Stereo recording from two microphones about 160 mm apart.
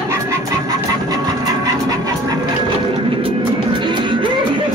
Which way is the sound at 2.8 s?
30° right (ahead or behind).